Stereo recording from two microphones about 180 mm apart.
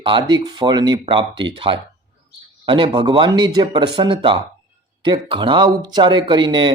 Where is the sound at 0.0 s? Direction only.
25° right (ahead or behind).